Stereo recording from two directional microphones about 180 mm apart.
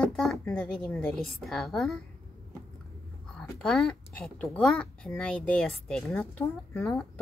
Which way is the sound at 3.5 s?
5° left (ahead or behind).